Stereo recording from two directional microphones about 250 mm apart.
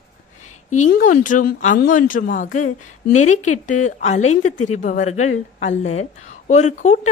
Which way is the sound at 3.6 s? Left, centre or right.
Left.